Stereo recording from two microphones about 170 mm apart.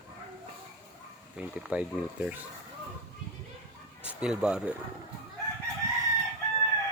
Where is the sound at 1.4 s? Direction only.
5° right (ahead or behind).